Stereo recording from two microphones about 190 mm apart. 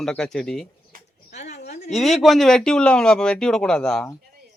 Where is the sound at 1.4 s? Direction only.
35° left (ahead or behind).